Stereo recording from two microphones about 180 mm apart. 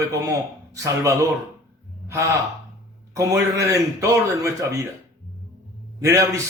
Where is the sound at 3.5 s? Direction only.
15° right (ahead or behind).